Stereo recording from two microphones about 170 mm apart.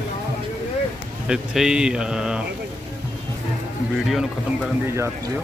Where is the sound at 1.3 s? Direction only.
5° right (ahead or behind).